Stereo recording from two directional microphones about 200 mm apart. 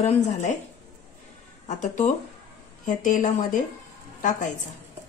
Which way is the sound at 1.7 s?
35° left (ahead or behind).